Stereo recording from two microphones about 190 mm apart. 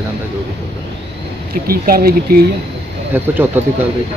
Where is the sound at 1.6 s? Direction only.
50° right (ahead or behind).